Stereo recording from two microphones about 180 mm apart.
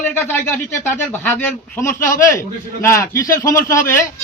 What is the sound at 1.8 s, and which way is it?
A man's voice, 15° left (ahead or behind).